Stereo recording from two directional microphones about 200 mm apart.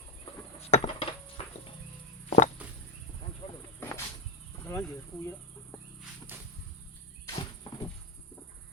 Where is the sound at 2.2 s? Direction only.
35° left (ahead or behind).